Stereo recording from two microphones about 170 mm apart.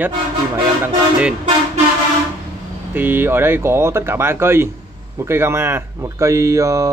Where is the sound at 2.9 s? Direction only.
10° right (ahead or behind).